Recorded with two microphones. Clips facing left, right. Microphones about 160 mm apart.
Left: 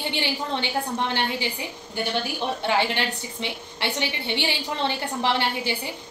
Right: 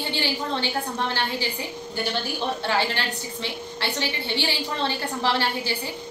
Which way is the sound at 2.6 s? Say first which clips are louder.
Left 4 dB; 20° left (ahead or behind).